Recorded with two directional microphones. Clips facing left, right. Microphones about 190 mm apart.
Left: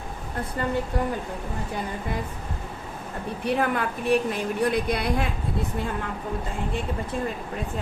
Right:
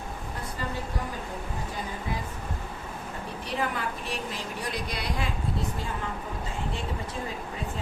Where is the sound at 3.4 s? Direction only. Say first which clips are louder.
Left 7 dB; 60° left (ahead or behind).